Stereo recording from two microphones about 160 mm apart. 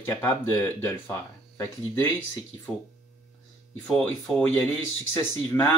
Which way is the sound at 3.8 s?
10° left (ahead or behind).